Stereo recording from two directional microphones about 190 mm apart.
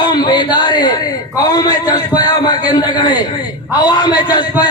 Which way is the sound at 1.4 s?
20° left (ahead or behind).